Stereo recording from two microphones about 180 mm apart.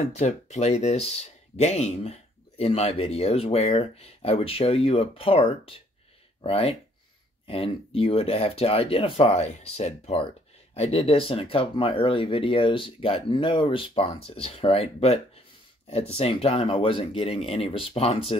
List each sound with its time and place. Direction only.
0.1 s speech: 40° left (ahead or behind)